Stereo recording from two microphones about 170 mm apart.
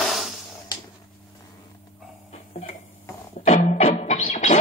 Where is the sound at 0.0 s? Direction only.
Centre (ahead or behind).